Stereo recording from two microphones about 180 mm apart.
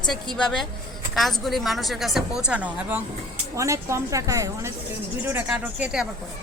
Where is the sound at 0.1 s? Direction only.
5° left (ahead or behind).